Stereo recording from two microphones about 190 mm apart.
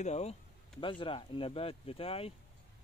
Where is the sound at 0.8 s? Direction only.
25° left (ahead or behind).